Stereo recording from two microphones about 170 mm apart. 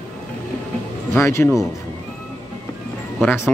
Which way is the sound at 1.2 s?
15° left (ahead or behind).